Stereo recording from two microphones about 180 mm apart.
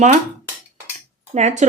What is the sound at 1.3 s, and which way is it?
Speech, 40° right (ahead or behind).